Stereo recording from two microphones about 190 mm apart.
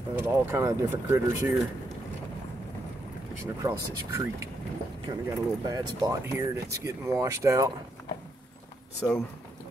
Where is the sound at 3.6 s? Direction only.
15° right (ahead or behind).